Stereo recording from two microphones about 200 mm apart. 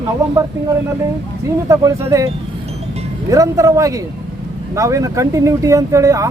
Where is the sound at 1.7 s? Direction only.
15° right (ahead or behind).